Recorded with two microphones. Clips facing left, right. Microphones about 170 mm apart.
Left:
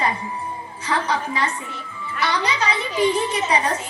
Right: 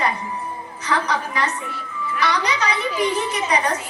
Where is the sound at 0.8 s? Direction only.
30° left (ahead or behind).